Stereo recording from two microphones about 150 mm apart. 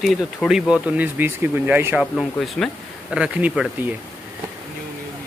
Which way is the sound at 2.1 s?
Centre (ahead or behind).